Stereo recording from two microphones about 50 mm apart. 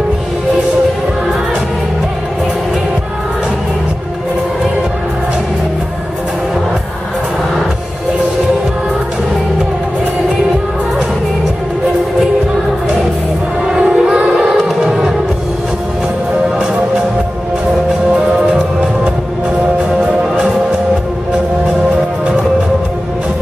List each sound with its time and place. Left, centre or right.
13.7 s music: centre
18.1 s music: right